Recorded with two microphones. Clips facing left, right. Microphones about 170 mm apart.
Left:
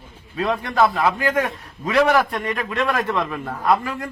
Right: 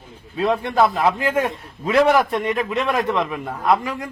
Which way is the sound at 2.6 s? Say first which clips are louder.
Right 1 dB; 20° right (ahead or behind).